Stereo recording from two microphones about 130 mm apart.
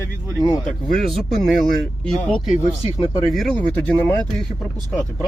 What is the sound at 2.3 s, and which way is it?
Speech, 45° left (ahead or behind).